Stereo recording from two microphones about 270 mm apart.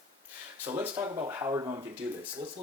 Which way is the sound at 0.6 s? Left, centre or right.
Centre.